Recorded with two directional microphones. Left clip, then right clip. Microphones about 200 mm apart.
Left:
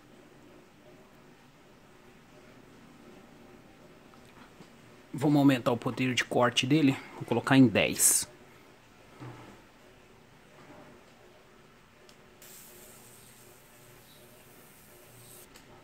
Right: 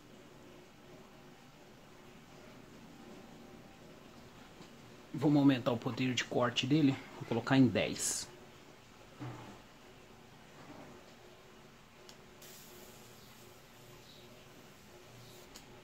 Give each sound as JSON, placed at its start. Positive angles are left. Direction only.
{"t": 5.2, "sound": "speech", "side_deg": 55}